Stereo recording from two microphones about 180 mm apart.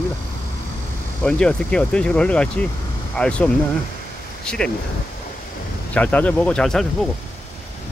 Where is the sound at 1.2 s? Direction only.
5° left (ahead or behind).